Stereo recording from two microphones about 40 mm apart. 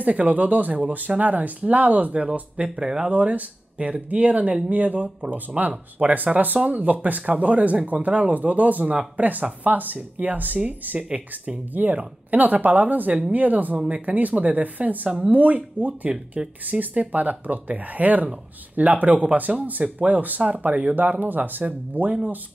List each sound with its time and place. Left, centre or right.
0.1 s speech: right
2.7 s speech: centre
3.1 s speech: right
5.7 s speech: right
6.1 s speech: right
11.1 s speech: right
11.7 s speech: right
13.7 s speech: right
19.5 s speech: centre
20.1 s speech: right